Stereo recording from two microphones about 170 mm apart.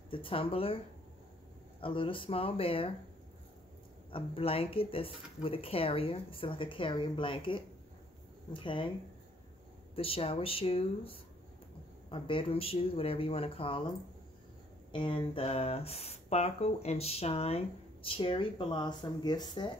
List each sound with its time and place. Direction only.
0.1 s speech: 30° left (ahead or behind)
1.8 s speech: 30° left (ahead or behind)
4.1 s speech: 35° left (ahead or behind)
9.9 s speech: 35° left (ahead or behind)
14.9 s speech: 30° left (ahead or behind)